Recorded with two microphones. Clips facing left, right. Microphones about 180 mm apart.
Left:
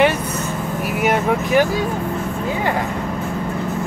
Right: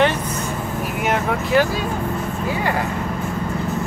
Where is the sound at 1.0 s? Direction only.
15° left (ahead or behind).